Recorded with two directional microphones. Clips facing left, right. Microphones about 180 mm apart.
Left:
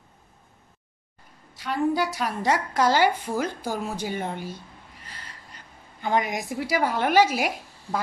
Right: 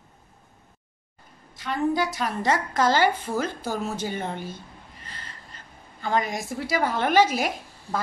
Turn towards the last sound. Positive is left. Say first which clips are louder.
# even
turn(degrees=10)  # may be behind; listen again after turning